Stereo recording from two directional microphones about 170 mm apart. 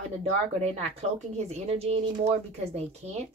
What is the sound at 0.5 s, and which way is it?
A woman's voice, 40° right (ahead or behind).